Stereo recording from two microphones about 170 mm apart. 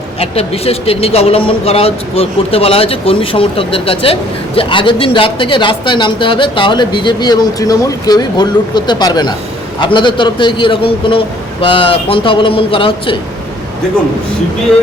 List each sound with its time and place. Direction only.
0.2 s a man's voice: 35° left (ahead or behind)